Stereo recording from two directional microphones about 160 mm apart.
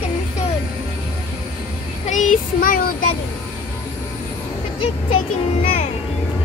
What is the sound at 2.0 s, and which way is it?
Child singing, 50° left (ahead or behind).